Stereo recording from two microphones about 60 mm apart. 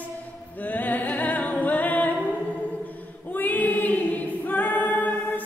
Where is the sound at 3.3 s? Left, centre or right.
Left.